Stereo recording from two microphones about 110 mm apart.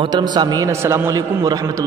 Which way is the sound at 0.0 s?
40° right (ahead or behind).